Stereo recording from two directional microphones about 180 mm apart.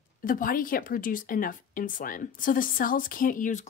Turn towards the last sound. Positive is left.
turn(degrees=50)  # may be behind; listen again after turning